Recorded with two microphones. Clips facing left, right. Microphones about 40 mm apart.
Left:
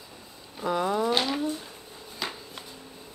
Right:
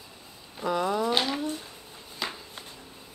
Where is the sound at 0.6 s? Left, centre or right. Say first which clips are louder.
Left 1 dB; centre.